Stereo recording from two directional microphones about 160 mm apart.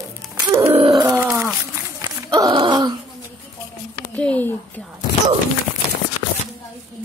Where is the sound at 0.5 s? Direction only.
20° right (ahead or behind).